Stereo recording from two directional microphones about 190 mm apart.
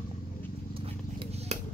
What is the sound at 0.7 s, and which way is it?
Purr, 30° right (ahead or behind).